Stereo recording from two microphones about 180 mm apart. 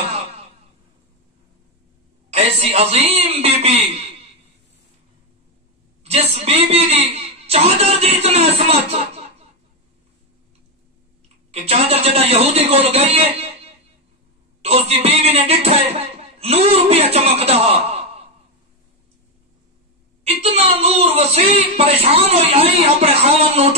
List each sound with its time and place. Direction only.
2.3 s speech: 35° right (ahead or behind)
6.3 s speech: 35° right (ahead or behind)
11.5 s speech: 35° right (ahead or behind)
20.2 s speech: 35° right (ahead or behind)